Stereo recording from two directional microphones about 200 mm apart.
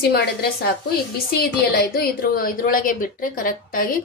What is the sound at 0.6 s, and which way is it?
Speech, 50° left (ahead or behind).